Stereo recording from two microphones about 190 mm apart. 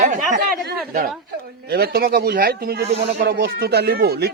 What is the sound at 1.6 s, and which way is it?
Speech, 55° right (ahead or behind).